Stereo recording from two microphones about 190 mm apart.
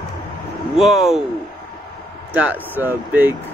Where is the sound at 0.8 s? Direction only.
Centre (ahead or behind).